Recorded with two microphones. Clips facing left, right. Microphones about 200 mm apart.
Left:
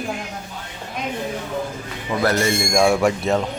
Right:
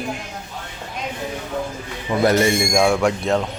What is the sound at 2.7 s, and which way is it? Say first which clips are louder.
Speech: even; centre (ahead or behind).